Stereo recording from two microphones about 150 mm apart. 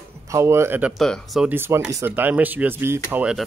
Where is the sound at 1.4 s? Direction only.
15° right (ahead or behind).